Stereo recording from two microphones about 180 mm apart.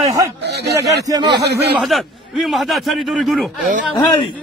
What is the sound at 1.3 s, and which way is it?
Speech, 65° right (ahead or behind).